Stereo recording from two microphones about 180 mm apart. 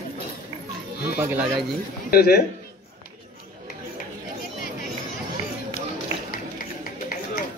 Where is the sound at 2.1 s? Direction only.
55° left (ahead or behind).